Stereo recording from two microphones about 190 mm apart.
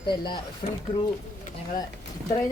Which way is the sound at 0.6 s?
40° left (ahead or behind).